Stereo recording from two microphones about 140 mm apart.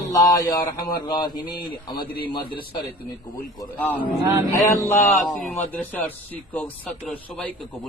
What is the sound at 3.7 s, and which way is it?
Speech, 10° left (ahead or behind).